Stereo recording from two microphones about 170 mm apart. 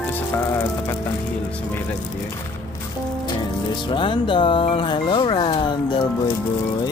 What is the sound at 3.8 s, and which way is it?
Speech, 30° left (ahead or behind).